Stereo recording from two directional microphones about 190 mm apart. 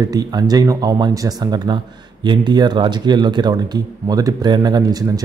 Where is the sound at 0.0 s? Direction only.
20° right (ahead or behind).